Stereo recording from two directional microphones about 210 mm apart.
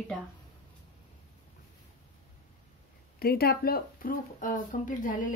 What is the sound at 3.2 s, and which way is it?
Speech, 45° left (ahead or behind).